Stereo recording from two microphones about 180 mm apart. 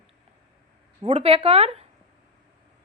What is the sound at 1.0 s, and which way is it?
Speech, 35° right (ahead or behind).